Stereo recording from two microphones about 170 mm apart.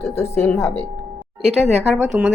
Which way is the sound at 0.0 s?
15° left (ahead or behind).